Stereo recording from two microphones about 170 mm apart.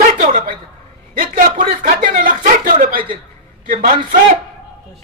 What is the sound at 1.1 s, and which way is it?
A man's voice, 55° right (ahead or behind).